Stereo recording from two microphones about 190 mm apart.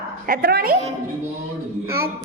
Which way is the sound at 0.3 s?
55° right (ahead or behind).